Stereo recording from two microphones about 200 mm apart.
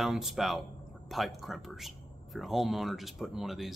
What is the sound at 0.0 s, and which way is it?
Speech, centre (ahead or behind).